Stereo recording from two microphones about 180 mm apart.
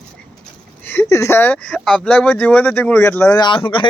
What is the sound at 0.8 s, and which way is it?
Speech, 15° left (ahead or behind).